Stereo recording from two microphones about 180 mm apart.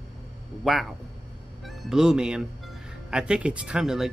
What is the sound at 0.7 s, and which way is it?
Speech, centre (ahead or behind).